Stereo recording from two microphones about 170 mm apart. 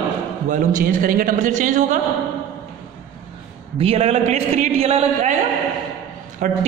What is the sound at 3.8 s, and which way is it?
A woman's voice, 35° right (ahead or behind).